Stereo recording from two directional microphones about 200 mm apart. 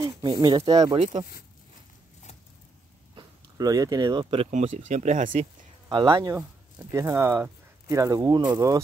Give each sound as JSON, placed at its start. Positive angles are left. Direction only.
{"t": 0.0, "sound": "speech", "side_deg": -25}
{"t": 0.7, "sound": "speech", "side_deg": -30}
{"t": 3.2, "sound": "speech", "side_deg": -20}
{"t": 4.5, "sound": "speech", "side_deg": -35}
{"t": 5.9, "sound": "speech", "side_deg": -20}